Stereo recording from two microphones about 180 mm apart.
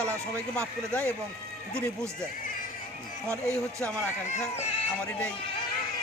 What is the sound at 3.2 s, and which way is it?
Speech, 15° right (ahead or behind).